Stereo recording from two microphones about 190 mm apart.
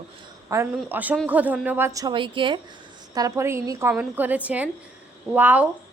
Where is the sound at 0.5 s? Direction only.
10° right (ahead or behind).